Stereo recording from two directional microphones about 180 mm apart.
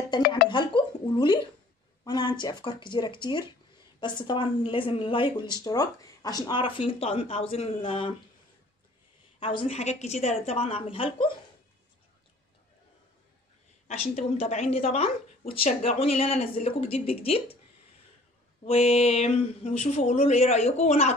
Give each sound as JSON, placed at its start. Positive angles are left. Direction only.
{"t": 0.5, "sound": "speech", "side_deg": 25}
{"t": 9.4, "sound": "a woman's voice", "side_deg": 30}
{"t": 13.8, "sound": "a woman's voice", "side_deg": 35}
{"t": 18.6, "sound": "a woman's voice", "side_deg": 35}